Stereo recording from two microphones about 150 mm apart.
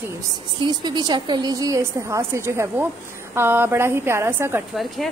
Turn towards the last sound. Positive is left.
turn(degrees=0)  # may be behind; listen again after turning